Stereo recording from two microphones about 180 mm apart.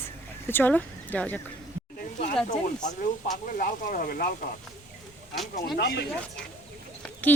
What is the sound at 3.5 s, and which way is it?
Speech, 50° left (ahead or behind).